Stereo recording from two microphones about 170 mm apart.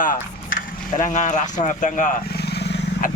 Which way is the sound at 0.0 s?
50° left (ahead or behind).